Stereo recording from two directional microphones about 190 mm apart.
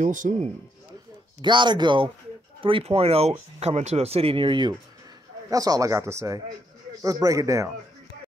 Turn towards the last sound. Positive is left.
turn(degrees=-15)  # may be behind; listen again after turning